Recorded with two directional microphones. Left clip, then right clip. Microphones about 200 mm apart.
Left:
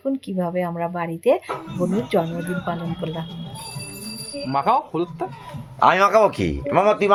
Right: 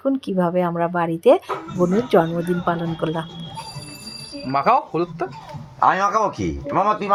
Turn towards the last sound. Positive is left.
turn(degrees=55)  # may be behind; listen again after turning